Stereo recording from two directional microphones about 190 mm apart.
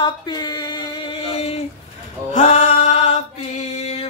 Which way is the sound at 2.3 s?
40° left (ahead or behind).